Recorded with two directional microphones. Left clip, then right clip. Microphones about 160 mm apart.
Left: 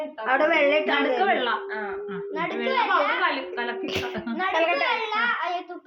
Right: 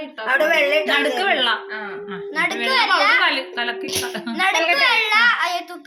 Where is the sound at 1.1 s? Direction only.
40° right (ahead or behind); by 2.1 s 55° right (ahead or behind).